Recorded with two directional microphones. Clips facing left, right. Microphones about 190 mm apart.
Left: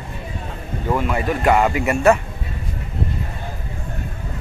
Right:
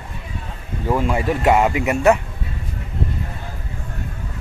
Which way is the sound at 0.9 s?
25° right (ahead or behind).